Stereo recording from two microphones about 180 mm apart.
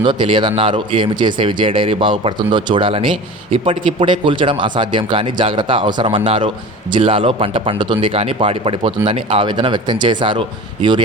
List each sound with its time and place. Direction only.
0.0 s speech: 25° right (ahead or behind)